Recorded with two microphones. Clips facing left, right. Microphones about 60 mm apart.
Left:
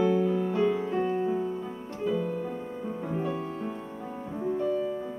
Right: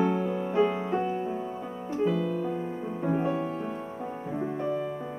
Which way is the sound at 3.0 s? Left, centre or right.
Right.